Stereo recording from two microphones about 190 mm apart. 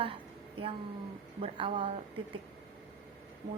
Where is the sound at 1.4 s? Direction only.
30° right (ahead or behind).